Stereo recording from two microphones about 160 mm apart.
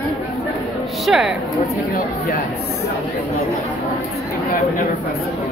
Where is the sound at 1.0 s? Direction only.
5° right (ahead or behind).